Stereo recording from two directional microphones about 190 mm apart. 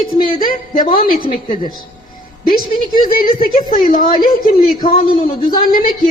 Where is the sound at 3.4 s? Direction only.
50° left (ahead or behind).